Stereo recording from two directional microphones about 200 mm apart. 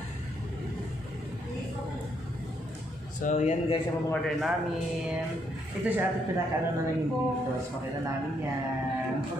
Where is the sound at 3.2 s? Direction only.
35° left (ahead or behind).